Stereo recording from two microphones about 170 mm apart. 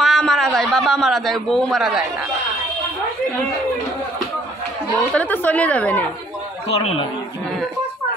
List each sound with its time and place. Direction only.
0.0 s a man's voice: centre (ahead or behind)
5.1 s speech: 10° left (ahead or behind)
6.7 s a man's voice: 35° left (ahead or behind)